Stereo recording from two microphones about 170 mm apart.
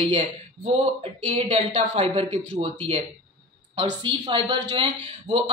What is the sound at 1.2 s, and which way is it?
A man's voice, 35° right (ahead or behind).